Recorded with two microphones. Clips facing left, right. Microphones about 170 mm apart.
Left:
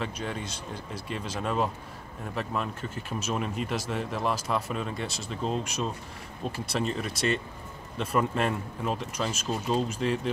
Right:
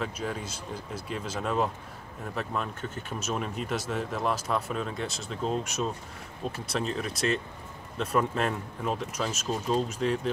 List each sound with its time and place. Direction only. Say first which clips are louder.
0.0 s speech: even; centre (ahead or behind)